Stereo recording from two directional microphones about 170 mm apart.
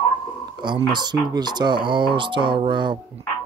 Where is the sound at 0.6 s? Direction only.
25° right (ahead or behind).